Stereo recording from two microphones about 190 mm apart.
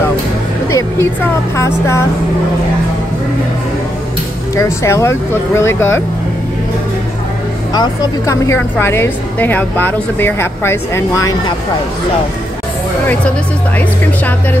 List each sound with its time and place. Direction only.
0.7 s a sound: 15° left (ahead or behind)
1.6 s a woman's voice: 15° left (ahead or behind)
4.6 s a woman's voice: 15° left (ahead or behind)
7.7 s a woman's voice: 20° left (ahead or behind)